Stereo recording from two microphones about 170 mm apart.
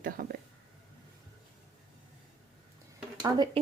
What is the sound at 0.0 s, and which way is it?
Speech, 60° right (ahead or behind).